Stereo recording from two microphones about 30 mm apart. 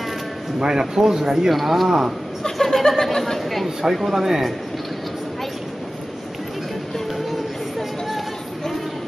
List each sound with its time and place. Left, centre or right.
0.6 s speech: right
1.5 s speech: centre
1.9 s speech: centre
2.6 s a sound: centre
3.3 s a sound: centre
3.9 s speech: centre